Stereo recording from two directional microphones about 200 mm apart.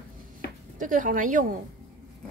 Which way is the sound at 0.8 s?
40° right (ahead or behind).